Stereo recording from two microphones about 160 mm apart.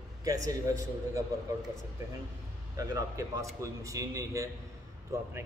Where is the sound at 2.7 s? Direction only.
20° right (ahead or behind).